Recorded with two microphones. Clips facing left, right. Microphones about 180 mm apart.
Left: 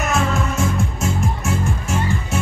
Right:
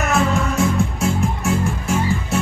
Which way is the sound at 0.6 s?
35° right (ahead or behind).